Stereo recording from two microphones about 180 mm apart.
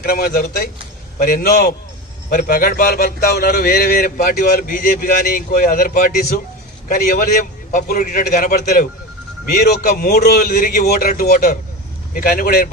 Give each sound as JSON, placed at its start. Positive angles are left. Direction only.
{"t": 0.0, "sound": "a man's voice", "side_deg": 55}